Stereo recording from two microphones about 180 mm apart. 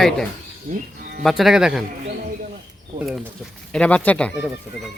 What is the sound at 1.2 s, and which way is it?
Speech, centre (ahead or behind).